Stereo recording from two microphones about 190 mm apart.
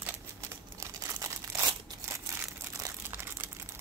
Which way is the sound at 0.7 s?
15° right (ahead or behind).